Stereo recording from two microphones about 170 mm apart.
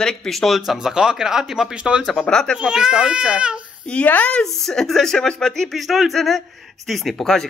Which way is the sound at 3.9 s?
10° left (ahead or behind).